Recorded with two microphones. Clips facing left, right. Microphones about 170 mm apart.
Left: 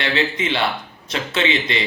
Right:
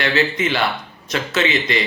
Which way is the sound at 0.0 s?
25° left (ahead or behind).